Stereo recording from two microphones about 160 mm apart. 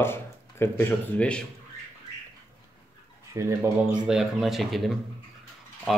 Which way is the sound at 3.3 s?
20° right (ahead or behind).